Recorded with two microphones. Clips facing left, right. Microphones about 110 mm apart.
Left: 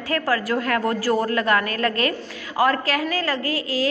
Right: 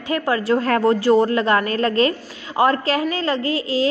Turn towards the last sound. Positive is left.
turn(degrees=-25)  # may be behind; listen again after turning